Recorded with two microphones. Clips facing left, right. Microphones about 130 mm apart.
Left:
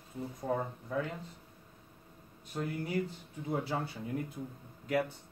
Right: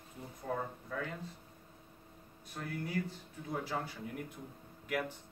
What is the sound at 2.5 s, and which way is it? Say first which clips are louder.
Speech: left 4 dB; 20° left (ahead or behind).